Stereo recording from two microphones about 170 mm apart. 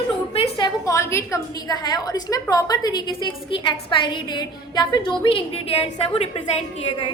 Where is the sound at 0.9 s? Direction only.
15° left (ahead or behind).